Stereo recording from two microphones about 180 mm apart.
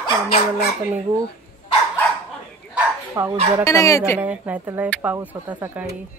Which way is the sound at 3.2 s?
15° right (ahead or behind).